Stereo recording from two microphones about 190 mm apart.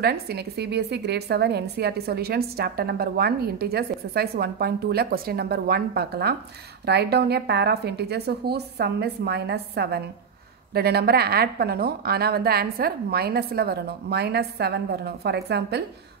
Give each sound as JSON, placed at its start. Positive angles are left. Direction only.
{"t": 0.0, "sound": "a woman's voice", "side_deg": -55}